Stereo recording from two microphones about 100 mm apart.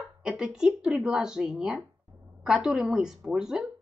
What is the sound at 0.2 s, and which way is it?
Speech, 5° right (ahead or behind).